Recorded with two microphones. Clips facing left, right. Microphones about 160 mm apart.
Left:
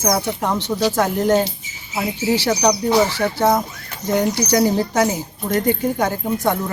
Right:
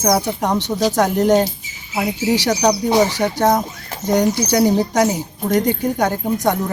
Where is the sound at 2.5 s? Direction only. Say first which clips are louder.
Even; 5° right (ahead or behind).